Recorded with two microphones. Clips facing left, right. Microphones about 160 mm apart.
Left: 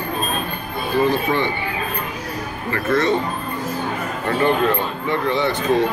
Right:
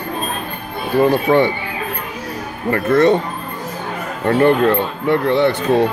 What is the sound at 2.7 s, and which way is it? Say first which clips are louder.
Speech: right 6 dB; 55° right (ahead or behind).